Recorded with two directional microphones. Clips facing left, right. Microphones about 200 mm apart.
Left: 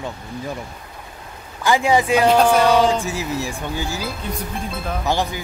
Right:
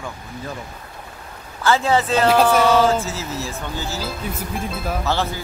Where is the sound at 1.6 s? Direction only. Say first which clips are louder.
Left 1 dB; 15° left (ahead or behind).